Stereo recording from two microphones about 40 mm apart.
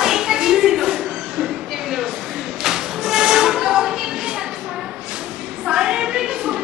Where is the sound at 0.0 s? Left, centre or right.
Centre.